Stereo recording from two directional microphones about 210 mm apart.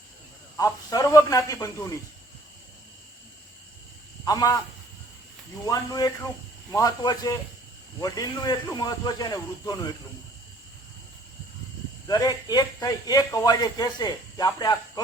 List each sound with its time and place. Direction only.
0.6 s speech: 15° left (ahead or behind)
4.3 s speech: 15° left (ahead or behind)
5.6 s speech: 15° left (ahead or behind)
12.0 s speech: 15° left (ahead or behind)